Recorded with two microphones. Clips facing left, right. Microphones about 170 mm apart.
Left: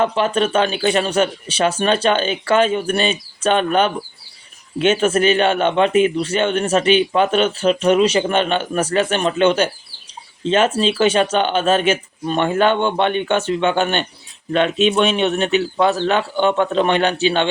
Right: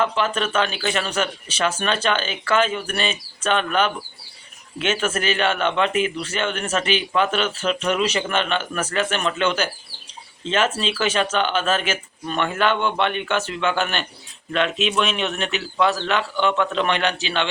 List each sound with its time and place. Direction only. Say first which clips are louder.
0.0 s a man's voice: left 5 dB; 30° left (ahead or behind)
17.1 s a man's voice: left 7 dB; 45° left (ahead or behind)